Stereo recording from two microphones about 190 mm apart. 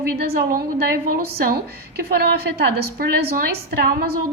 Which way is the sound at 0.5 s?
55° right (ahead or behind).